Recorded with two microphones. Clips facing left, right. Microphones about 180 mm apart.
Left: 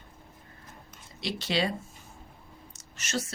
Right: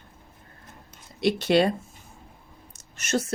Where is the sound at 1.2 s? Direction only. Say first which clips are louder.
Right 9 dB; 55° right (ahead or behind).